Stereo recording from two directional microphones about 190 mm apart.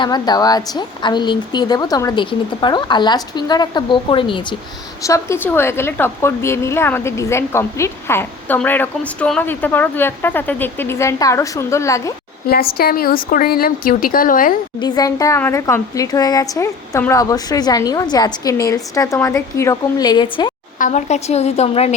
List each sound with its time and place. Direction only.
0.0 s a woman's voice: 20° left (ahead or behind)
5.0 s a woman's voice: 15° left (ahead or behind)
12.5 s speech: 55° left (ahead or behind)
14.8 s a woman's voice: 20° left (ahead or behind)
20.7 s a woman's voice: 40° left (ahead or behind)